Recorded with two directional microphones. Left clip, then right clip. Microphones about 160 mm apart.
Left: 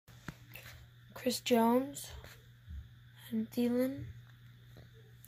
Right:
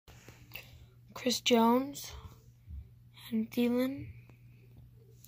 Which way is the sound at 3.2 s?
10° right (ahead or behind).